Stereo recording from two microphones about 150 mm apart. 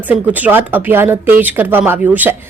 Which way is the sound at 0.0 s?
10° right (ahead or behind).